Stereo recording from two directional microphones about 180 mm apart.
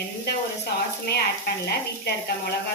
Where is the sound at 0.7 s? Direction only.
65° left (ahead or behind).